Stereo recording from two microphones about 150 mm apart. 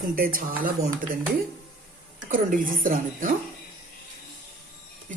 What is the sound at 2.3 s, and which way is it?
A woman's voice, 65° right (ahead or behind).